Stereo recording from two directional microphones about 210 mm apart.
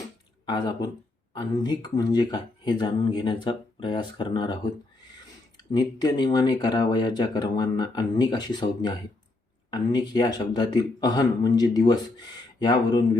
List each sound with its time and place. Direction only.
0.4 s speech: 20° left (ahead or behind)
5.7 s speech: 20° left (ahead or behind)